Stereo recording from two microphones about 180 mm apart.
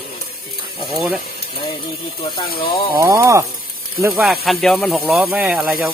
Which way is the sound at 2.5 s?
60° left (ahead or behind).